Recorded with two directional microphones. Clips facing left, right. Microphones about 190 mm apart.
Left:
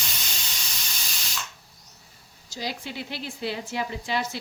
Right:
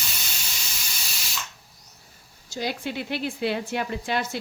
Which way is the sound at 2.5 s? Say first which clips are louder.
Right 4 dB; 55° right (ahead or behind).